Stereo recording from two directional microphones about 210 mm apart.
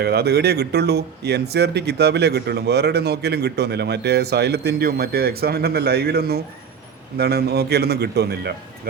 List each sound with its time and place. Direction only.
0.0 s speech: 50° right (ahead or behind)